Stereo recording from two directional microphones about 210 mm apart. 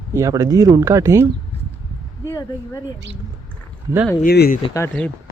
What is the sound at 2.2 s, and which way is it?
Speech, 15° left (ahead or behind).